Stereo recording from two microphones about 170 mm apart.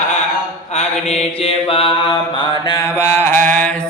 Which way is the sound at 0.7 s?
40° left (ahead or behind).